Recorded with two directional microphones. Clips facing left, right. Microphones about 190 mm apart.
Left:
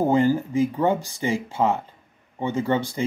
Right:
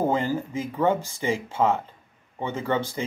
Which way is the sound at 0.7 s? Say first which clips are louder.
Left 1 dB; 15° left (ahead or behind).